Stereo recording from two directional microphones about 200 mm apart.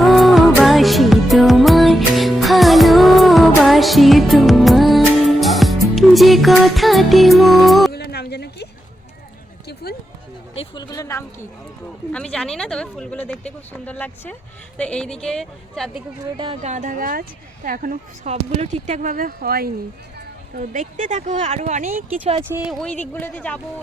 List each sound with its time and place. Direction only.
0.0 s music: centre (ahead or behind)
7.9 s a sound: 55° left (ahead or behind)
10.5 s speech: 25° left (ahead or behind); by 16.0 s centre (ahead or behind)
16.2 s speech: 25° right (ahead or behind)
16.6 s speech: 35° right (ahead or behind)
22.4 s speech: 10° right (ahead or behind); by 23.6 s 10° left (ahead or behind)